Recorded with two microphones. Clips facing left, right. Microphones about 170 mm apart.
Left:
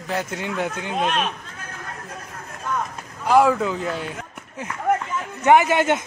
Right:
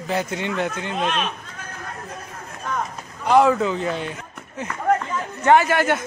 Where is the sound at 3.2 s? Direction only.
5° left (ahead or behind).